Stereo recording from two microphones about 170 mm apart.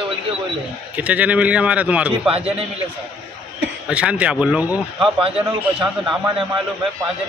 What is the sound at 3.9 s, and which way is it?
Speech, 5° right (ahead or behind).